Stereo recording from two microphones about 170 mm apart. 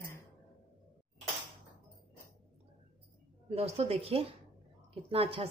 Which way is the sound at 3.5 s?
35° right (ahead or behind).